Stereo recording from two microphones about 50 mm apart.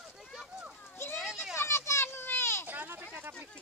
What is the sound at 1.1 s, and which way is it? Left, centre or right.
Children playing, centre.